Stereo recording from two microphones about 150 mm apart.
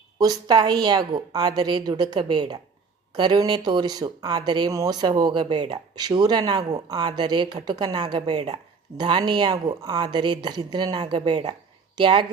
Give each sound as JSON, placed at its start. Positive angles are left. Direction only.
{"t": 0.2, "sound": "a woman's voice", "side_deg": -25}